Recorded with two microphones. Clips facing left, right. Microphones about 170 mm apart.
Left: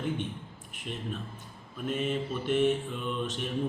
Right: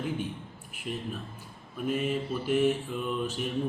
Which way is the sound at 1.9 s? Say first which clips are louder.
Right 1 dB; 5° right (ahead or behind).